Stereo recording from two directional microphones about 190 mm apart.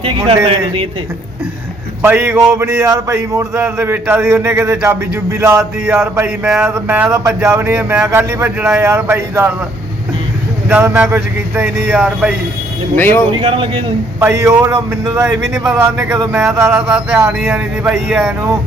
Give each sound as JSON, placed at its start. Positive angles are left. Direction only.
{"t": 2.0, "sound": "speech", "side_deg": -10}
{"t": 10.7, "sound": "speech", "side_deg": -10}
{"t": 13.0, "sound": "speech", "side_deg": 10}
{"t": 13.3, "sound": "a man's voice", "side_deg": -25}
{"t": 14.2, "sound": "speech", "side_deg": -15}
{"t": 15.4, "sound": "speech", "side_deg": -5}